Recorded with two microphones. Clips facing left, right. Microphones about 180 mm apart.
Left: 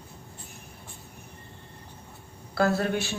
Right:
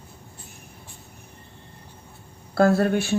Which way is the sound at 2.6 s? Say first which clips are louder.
Right 6 dB; 50° right (ahead or behind).